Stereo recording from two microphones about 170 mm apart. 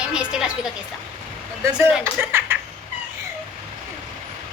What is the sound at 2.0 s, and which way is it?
Speech, 15° right (ahead or behind).